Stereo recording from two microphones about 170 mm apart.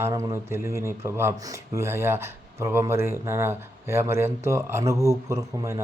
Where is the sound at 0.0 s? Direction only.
20° right (ahead or behind).